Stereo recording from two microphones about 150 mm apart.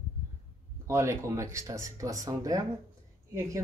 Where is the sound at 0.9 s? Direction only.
20° right (ahead or behind).